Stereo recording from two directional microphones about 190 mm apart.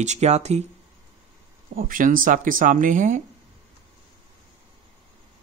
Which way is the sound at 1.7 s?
45° right (ahead or behind).